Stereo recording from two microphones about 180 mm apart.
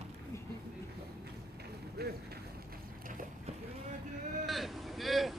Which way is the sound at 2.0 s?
60° right (ahead or behind).